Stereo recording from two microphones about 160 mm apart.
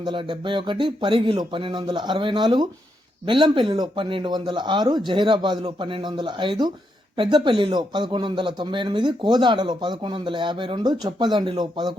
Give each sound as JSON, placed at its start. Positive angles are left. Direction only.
{"t": 0.0, "sound": "speech", "side_deg": -30}